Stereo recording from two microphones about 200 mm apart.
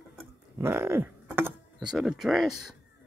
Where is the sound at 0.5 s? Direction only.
10° right (ahead or behind).